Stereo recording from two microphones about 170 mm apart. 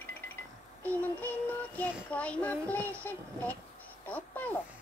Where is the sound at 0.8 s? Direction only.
10° left (ahead or behind).